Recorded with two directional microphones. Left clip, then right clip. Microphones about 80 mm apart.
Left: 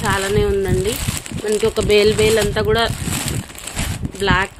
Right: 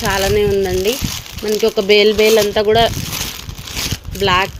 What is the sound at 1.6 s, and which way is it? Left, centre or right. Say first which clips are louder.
Speech: right 3 dB; right.